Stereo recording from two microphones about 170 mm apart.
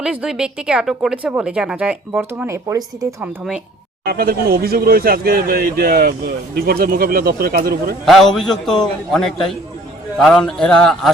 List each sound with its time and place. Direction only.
0.0 s speech: 5° right (ahead or behind)
4.0 s speech: 60° right (ahead or behind)
8.0 s a man's voice: centre (ahead or behind)